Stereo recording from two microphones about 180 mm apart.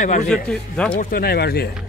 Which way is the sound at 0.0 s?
45° left (ahead or behind).